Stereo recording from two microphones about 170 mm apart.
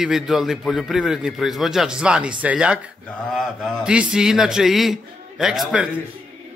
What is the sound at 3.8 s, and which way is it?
A man's voice, 5° right (ahead or behind).